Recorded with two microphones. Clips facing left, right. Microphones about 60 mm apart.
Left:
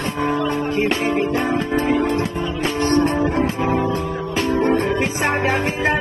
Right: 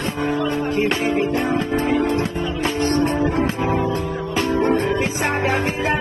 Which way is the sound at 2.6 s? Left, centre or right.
Left.